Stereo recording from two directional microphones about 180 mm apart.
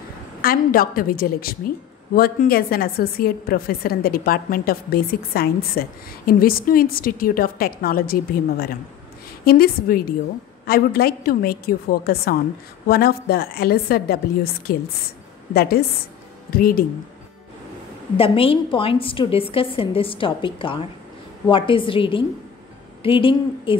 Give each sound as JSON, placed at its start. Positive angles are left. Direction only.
{"t": 0.4, "sound": "a woman's voice", "side_deg": 55}
{"t": 18.1, "sound": "a woman's voice", "side_deg": 30}